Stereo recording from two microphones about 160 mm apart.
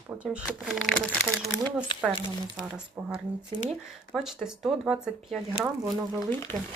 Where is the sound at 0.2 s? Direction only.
5° right (ahead or behind).